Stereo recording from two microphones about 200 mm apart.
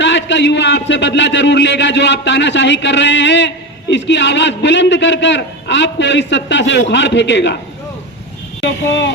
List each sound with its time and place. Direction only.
0.0 s a man's voice: 65° left (ahead or behind)
8.6 s a man's voice: 60° left (ahead or behind)